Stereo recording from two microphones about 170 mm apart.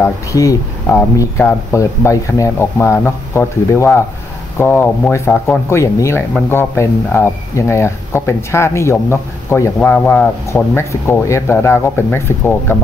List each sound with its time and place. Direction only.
0.0 s speech: 20° left (ahead or behind)